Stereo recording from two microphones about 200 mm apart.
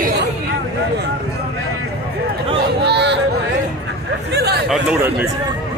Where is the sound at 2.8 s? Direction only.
60° right (ahead or behind).